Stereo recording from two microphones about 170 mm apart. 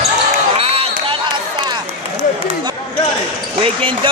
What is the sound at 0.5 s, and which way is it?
Run, 35° right (ahead or behind).